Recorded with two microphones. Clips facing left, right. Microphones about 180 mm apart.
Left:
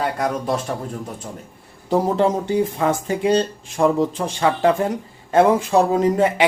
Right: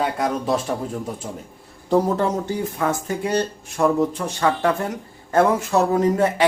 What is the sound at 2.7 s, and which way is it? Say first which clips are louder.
Speech: left 3 dB; 20° left (ahead or behind).